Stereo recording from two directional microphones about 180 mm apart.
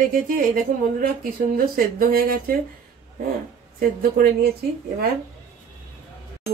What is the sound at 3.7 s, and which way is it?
Speech, 50° right (ahead or behind).